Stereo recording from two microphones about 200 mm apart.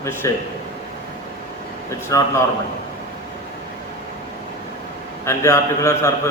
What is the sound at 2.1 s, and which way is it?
Speech, 15° left (ahead or behind).